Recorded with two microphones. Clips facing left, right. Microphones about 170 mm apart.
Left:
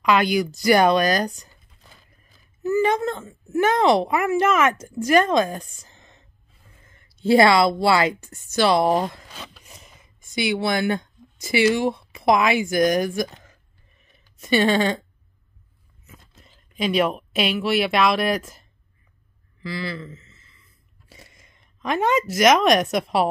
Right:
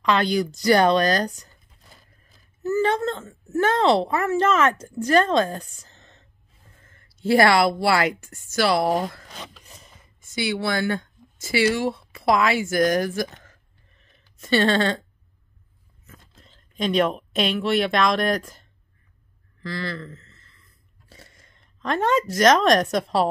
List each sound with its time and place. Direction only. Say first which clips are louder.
0.0 s speech: left 2 dB; 10° left (ahead or behind)
2.6 s a woman's voice: left 1 dB; 15° left (ahead or behind)
16.1 s speech: even; 10° left (ahead or behind)
19.6 s a sound: left 1 dB; 5° left (ahead or behind)
21.1 s speech: even; 10° left (ahead or behind)